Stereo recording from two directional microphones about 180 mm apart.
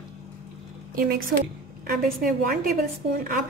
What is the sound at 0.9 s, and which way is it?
A woman's voice, 55° right (ahead or behind).